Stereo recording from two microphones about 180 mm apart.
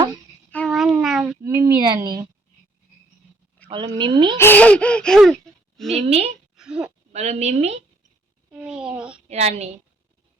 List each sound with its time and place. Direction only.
0.5 s a sound: centre (ahead or behind)
1.4 s a sound: 15° right (ahead or behind)
3.7 s speech: 25° right (ahead or behind)
4.4 s speech: 10° left (ahead or behind)
5.9 s a woman's voice: 35° right (ahead or behind)
6.6 s speech: 5° right (ahead or behind)
7.1 s a woman's voice: 40° right (ahead or behind)
8.5 s a woman's voice: 5° right (ahead or behind)
9.3 s a woman's voice: 35° right (ahead or behind)